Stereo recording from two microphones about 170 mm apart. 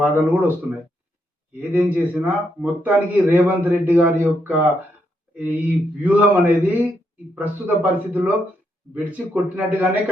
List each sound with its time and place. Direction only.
0.0 s a man's voice: 10° right (ahead or behind)
1.5 s a man's voice: 10° right (ahead or behind)